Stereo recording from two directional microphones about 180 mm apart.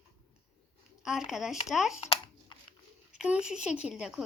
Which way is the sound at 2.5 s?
25° left (ahead or behind).